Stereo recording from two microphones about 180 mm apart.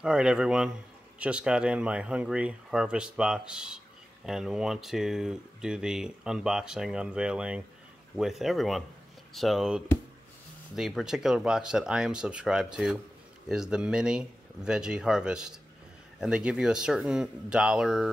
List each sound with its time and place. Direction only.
0.0 s speech: 5° right (ahead or behind)